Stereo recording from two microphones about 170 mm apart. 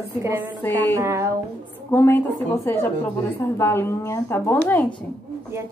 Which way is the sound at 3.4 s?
15° left (ahead or behind).